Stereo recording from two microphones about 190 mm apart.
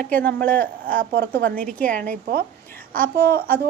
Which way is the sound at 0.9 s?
50° right (ahead or behind).